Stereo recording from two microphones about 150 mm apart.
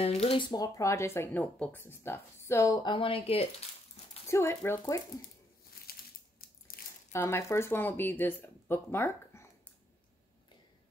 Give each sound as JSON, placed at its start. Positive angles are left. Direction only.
{"t": 0.0, "sound": "speech", "side_deg": 40}
{"t": 0.5, "sound": "speech", "side_deg": 20}
{"t": 4.3, "sound": "speech", "side_deg": 15}
{"t": 5.9, "sound": "crumpling", "side_deg": 80}
{"t": 6.7, "sound": "a sound", "side_deg": 80}
{"t": 7.1, "sound": "speech", "side_deg": 15}